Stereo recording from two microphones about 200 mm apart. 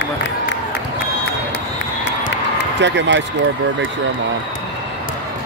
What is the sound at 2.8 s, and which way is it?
Speech, 65° right (ahead or behind).